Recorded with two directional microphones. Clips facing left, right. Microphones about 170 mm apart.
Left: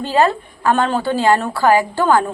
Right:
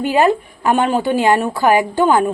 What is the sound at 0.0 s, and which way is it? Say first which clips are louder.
A woman's voice: right 2 dB; 15° right (ahead or behind).